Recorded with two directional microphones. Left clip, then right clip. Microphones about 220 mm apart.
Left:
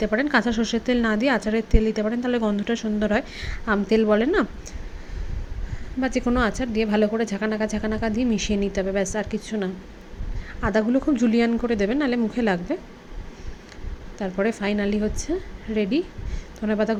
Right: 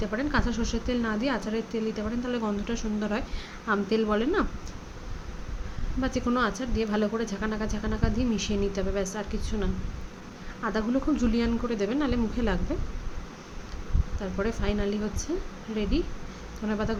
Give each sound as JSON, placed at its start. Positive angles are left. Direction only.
{"t": 0.0, "sound": "a woman's voice", "side_deg": 25}
{"t": 6.0, "sound": "a woman's voice", "side_deg": 20}
{"t": 14.2, "sound": "a woman's voice", "side_deg": 25}